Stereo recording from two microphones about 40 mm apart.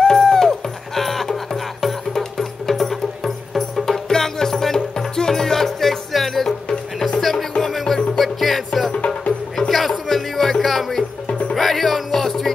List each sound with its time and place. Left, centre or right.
0.0 s music: centre
8.9 s music: left
9.7 s music: centre
11.2 s music: left
11.5 s music: centre